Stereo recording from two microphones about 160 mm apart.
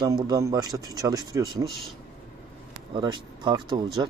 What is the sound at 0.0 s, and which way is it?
Speech, 25° right (ahead or behind).